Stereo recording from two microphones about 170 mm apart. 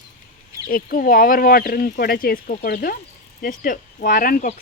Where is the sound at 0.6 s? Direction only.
55° left (ahead or behind).